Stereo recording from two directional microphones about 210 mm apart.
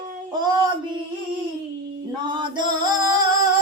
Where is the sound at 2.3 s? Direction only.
20° right (ahead or behind).